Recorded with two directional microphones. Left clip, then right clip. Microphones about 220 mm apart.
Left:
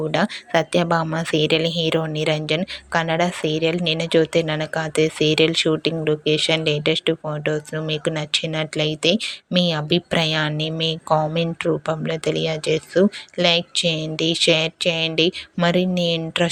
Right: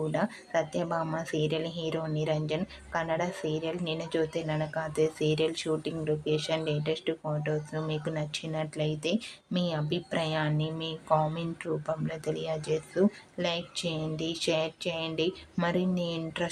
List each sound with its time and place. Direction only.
0.1 s speech: 30° left (ahead or behind)